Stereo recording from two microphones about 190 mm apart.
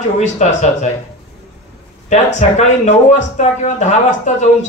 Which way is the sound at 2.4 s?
35° left (ahead or behind).